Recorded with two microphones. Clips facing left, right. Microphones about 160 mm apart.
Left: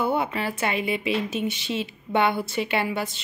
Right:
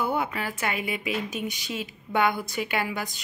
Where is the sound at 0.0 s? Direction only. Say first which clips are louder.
Left 3 dB; 25° left (ahead or behind).